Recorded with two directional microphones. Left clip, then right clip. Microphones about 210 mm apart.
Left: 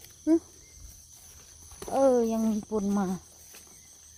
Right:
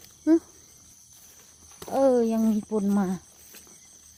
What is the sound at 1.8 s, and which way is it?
Speech, 15° right (ahead or behind).